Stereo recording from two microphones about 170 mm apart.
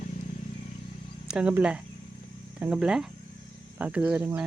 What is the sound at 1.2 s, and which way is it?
Speech, 5° right (ahead or behind).